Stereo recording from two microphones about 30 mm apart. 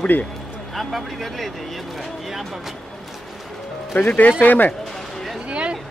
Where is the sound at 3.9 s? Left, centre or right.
Left.